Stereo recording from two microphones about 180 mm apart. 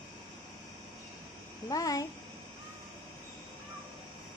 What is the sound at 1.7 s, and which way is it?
Speech, 20° left (ahead or behind).